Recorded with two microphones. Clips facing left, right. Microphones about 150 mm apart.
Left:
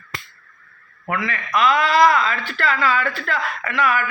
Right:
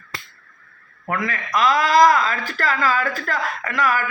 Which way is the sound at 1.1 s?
40° right (ahead or behind).